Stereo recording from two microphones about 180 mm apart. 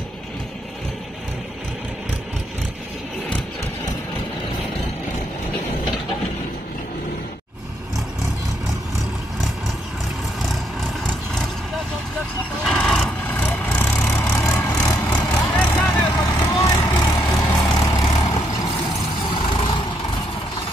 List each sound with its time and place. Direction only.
10.5 s vehicle: 5° left (ahead or behind)
12.6 s vehicle: 5° left (ahead or behind)
15.9 s vehicle: 20° left (ahead or behind)
17.4 s vehicle: 10° left (ahead or behind)
17.6 s vehicle: 20° left (ahead or behind)